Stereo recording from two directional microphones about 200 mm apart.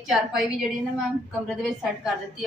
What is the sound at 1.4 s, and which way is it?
A woman's voice, centre (ahead or behind).